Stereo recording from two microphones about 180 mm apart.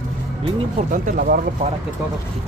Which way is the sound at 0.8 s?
45° right (ahead or behind).